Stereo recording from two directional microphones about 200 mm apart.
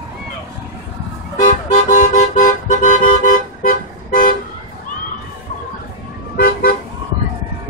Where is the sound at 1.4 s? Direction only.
35° left (ahead or behind).